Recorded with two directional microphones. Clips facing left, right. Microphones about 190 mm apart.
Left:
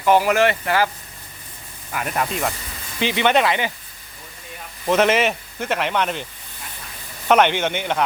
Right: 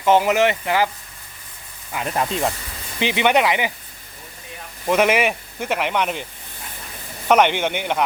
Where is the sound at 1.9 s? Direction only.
25° right (ahead or behind).